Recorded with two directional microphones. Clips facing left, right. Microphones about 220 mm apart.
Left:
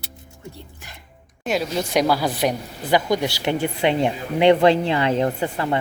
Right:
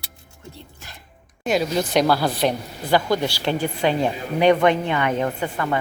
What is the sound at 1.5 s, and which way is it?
A woman's voice, centre (ahead or behind).